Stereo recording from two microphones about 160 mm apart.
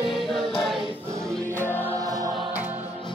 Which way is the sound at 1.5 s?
10° left (ahead or behind).